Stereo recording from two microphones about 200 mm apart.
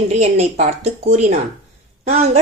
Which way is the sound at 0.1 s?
35° right (ahead or behind).